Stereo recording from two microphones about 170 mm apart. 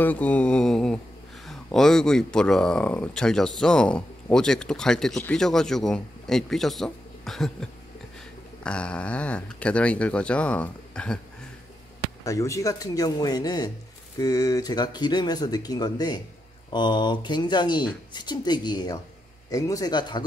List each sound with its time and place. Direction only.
0.0 s speech: 10° left (ahead or behind)
12.3 s speech: 20° left (ahead or behind)